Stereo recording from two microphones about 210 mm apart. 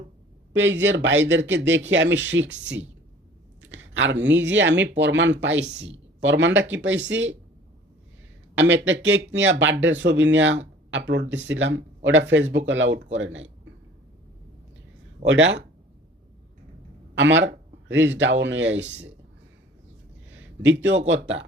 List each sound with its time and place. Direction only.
0.5 s speech: 60° right (ahead or behind)
8.5 s speech: 60° right (ahead or behind)
15.3 s speech: 60° right (ahead or behind)
17.2 s speech: 60° right (ahead or behind)
20.3 s a sound: 65° right (ahead or behind)
21.1 s speech: 60° right (ahead or behind)